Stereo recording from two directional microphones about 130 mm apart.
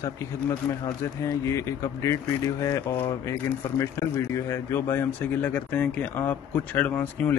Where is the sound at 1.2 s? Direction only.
25° left (ahead or behind).